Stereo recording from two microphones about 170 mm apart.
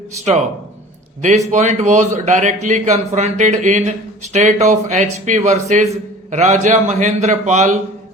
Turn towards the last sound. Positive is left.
turn(degrees=-45)  # may be behind; listen again after turning